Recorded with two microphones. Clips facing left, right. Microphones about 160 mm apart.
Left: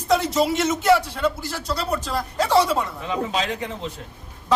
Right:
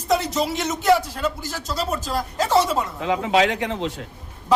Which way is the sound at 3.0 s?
85° right.